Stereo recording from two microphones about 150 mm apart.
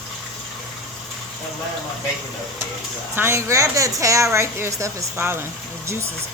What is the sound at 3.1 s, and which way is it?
A woman's voice, 15° right (ahead or behind).